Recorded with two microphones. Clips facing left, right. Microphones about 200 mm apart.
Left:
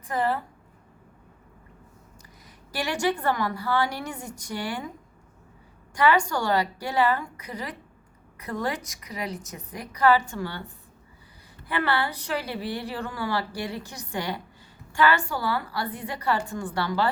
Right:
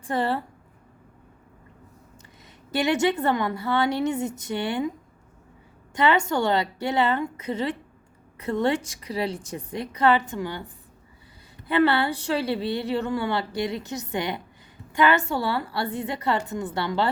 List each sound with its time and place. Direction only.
0.0 s a woman's voice: 30° right (ahead or behind)
2.7 s a woman's voice: 20° right (ahead or behind)
5.9 s a woman's voice: 25° right (ahead or behind)
11.7 s a woman's voice: 25° right (ahead or behind)